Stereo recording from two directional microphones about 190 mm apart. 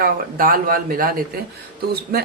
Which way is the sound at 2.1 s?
55° right (ahead or behind).